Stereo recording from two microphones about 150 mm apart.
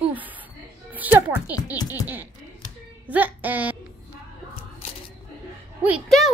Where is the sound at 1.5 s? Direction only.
25° left (ahead or behind).